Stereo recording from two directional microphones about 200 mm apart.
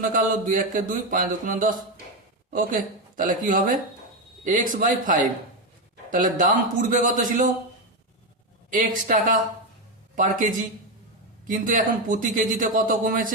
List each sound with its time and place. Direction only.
0.0 s mantra: 45° right (ahead or behind)
3.2 s mantra: 40° right (ahead or behind)
4.4 s speech: 40° right (ahead or behind)
8.7 s mantra: 40° right (ahead or behind)
10.2 s speech: 40° right (ahead or behind)